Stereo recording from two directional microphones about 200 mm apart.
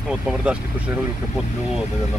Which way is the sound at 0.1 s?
5° right (ahead or behind).